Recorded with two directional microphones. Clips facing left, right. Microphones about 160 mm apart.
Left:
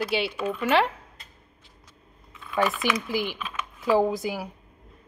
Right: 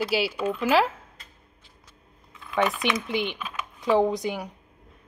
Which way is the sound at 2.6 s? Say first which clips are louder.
Even; centre (ahead or behind).